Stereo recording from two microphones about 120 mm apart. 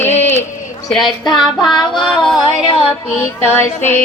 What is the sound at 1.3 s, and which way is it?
Child singing, 40° left (ahead or behind).